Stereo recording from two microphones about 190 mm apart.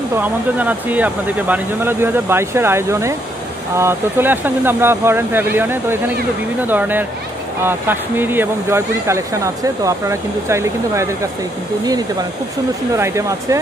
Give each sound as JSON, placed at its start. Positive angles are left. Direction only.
{"t": 0.2, "sound": "speech", "side_deg": -10}